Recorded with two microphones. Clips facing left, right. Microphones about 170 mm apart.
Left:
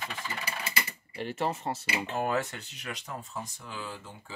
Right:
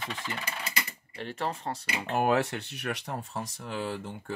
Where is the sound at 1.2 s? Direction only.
5° left (ahead or behind).